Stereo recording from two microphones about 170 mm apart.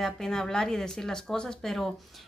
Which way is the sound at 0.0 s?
5° left (ahead or behind).